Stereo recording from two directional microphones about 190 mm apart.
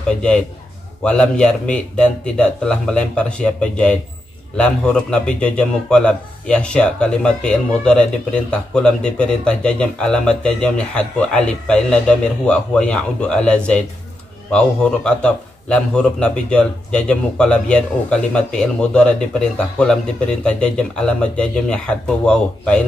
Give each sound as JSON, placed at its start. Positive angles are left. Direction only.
{"t": 1.0, "sound": "a man's voice", "side_deg": 5}